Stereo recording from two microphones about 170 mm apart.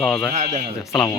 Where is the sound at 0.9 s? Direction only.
20° left (ahead or behind).